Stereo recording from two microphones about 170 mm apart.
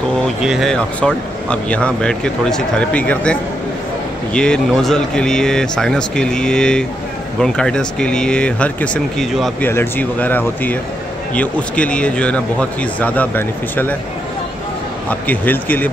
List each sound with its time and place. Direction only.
0.4 s speech: centre (ahead or behind)
15.0 s speech: 10° left (ahead or behind)